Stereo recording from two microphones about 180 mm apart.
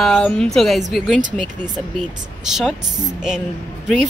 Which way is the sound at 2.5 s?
5° right (ahead or behind).